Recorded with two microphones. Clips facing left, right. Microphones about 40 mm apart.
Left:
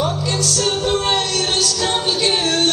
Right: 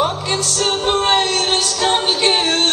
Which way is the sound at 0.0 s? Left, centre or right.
Right.